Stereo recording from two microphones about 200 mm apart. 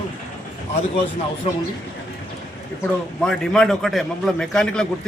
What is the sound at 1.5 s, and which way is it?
Speech, 30° left (ahead or behind).